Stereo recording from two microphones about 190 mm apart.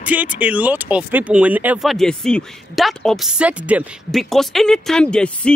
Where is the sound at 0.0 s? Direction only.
10° right (ahead or behind).